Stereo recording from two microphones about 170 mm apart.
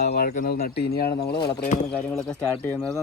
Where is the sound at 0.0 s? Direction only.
65° left (ahead or behind).